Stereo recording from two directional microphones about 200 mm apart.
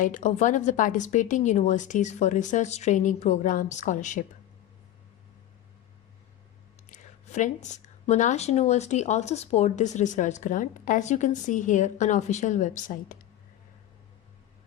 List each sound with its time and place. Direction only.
0.0 s speech: 40° left (ahead or behind)
6.9 s speech: 35° left (ahead or behind)